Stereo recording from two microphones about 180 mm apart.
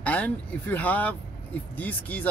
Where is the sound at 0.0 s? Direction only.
10° left (ahead or behind).